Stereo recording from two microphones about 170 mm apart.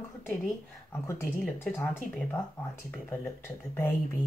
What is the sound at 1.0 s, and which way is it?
Speech, 10° left (ahead or behind).